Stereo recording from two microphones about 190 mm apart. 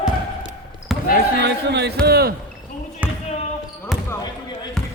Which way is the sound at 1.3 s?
65° right (ahead or behind).